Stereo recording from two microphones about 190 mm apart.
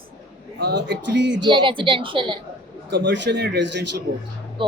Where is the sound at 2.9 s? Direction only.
65° right (ahead or behind).